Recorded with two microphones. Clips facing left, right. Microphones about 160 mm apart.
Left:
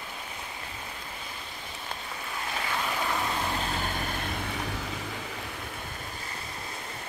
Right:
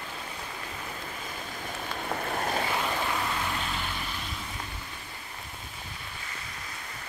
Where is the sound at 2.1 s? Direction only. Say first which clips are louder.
Right 8 dB; 50° right (ahead or behind).